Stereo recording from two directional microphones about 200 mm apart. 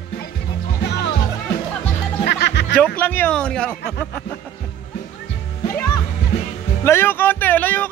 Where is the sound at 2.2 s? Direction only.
60° left (ahead or behind).